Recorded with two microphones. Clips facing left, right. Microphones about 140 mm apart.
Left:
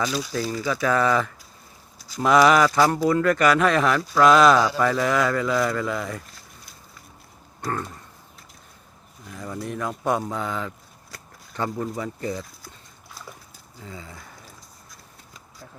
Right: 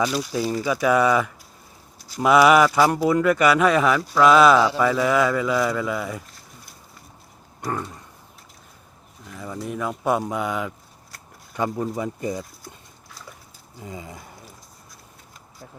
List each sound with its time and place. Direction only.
0.3 s speech: 10° right (ahead or behind)
7.6 s speech: 10° right (ahead or behind)
9.2 s speech: centre (ahead or behind)
13.8 s speech: 20° right (ahead or behind)